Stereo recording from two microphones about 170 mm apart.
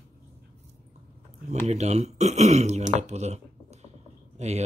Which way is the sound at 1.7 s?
40° right (ahead or behind).